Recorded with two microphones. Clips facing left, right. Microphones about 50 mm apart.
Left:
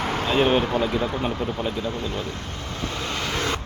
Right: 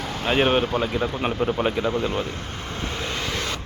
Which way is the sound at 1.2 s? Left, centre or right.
Right.